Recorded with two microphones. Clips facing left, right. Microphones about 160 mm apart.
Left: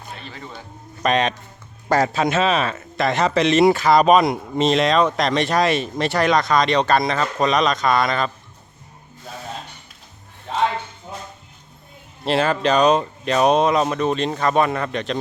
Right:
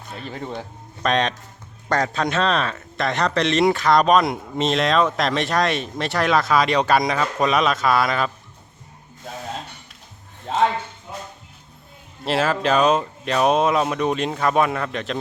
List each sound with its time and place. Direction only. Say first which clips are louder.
0.2 s speech: right 6 dB; 45° right (ahead or behind)
1.0 s a man's voice: left 2 dB; 5° left (ahead or behind)
12.2 s a man's voice: left 2 dB; centre (ahead or behind)